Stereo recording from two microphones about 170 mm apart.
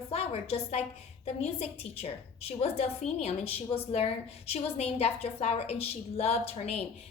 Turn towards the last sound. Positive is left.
turn(degrees=35)  # may be behind; listen again after turning